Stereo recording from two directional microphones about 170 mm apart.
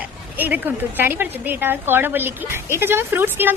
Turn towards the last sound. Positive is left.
turn(degrees=-10)  # may be behind; listen again after turning